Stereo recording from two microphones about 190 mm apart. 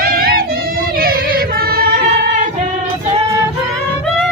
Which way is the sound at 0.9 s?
50° right (ahead or behind).